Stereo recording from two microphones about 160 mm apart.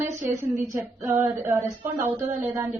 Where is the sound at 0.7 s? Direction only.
20° right (ahead or behind).